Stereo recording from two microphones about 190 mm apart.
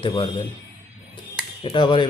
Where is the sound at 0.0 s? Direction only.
25° left (ahead or behind).